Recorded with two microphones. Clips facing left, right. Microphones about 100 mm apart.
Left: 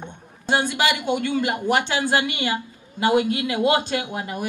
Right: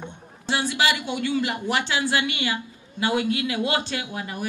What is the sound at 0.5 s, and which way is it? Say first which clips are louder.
Speech: left 2 dB; 50° left (ahead or behind).